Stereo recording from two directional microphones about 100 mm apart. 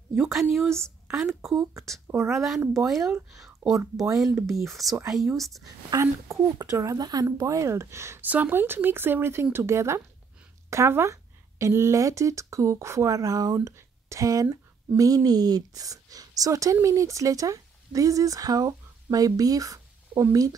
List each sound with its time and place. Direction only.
0.1 s a woman's voice: 5° right (ahead or behind)
3.3 s a sound: 5° right (ahead or behind)
4.0 s speech: 35° right (ahead or behind)
4.6 s speech: centre (ahead or behind)
5.9 s speech: 30° right (ahead or behind)